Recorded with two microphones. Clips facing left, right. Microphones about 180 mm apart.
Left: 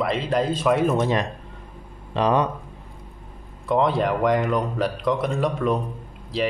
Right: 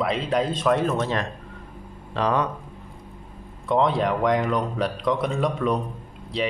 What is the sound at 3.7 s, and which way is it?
Speech, centre (ahead or behind).